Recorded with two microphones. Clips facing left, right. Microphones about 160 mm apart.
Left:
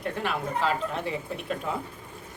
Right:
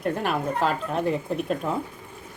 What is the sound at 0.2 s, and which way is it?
Speech, 50° right (ahead or behind).